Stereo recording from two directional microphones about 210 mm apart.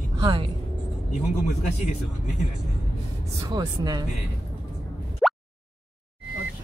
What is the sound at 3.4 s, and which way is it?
Speech, 20° right (ahead or behind).